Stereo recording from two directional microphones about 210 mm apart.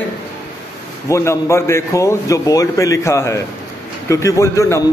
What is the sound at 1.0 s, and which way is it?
A man's voice, 15° left (ahead or behind).